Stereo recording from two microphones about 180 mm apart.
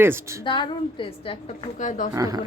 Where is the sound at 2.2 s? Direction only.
20° right (ahead or behind).